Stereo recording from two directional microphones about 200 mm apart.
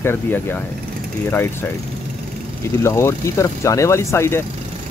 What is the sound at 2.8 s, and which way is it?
Speech, 15° left (ahead or behind).